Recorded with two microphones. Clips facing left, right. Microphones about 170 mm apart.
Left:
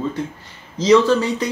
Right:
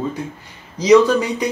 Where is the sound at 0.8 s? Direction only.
15° right (ahead or behind).